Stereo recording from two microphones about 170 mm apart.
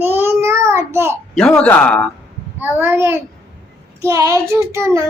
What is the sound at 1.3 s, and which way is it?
Speech, 5° left (ahead or behind).